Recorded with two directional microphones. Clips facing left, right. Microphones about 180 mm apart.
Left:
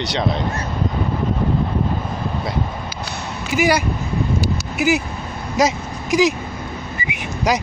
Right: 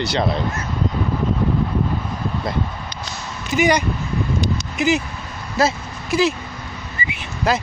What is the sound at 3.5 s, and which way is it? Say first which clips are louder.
Speech: even; 5° left (ahead or behind).